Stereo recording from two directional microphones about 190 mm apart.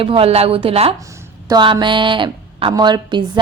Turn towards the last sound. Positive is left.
turn(degrees=-25)  # may be behind; listen again after turning